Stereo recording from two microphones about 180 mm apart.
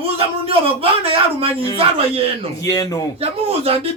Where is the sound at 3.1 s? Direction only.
35° right (ahead or behind).